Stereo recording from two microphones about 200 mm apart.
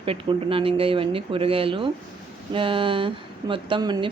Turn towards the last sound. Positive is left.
turn(degrees=-20)  # may be behind; listen again after turning